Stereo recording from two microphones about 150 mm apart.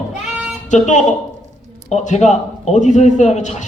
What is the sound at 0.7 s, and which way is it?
A man's voice, 55° left (ahead or behind).